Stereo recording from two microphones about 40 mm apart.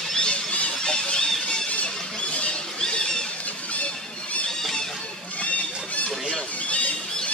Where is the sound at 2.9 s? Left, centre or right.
Left.